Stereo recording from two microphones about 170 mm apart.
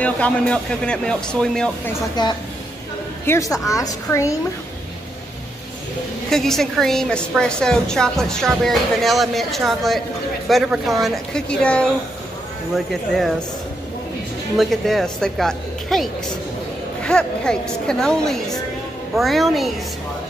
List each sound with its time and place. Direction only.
0.0 s a woman's voice: 5° left (ahead or behind)
2.2 s a woman's voice: 25° left (ahead or behind)
6.3 s a woman's voice: centre (ahead or behind)
14.6 s a woman's voice: centre (ahead or behind)